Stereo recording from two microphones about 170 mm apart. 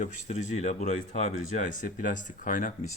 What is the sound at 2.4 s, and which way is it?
Speech, 50° left (ahead or behind).